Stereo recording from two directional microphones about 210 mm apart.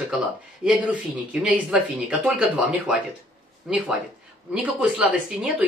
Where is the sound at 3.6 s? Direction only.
Centre (ahead or behind).